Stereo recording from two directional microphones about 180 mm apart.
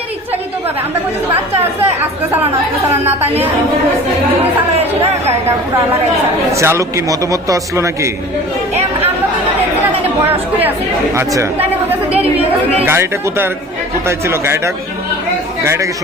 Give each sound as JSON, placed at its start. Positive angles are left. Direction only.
{"t": 1.8, "sound": "a man's voice", "side_deg": -10}
{"t": 6.6, "sound": "a man's voice", "side_deg": -15}
{"t": 11.1, "sound": "a man's voice", "side_deg": -15}
{"t": 12.2, "sound": "speech", "side_deg": -35}
{"t": 12.8, "sound": "a man's voice", "side_deg": -15}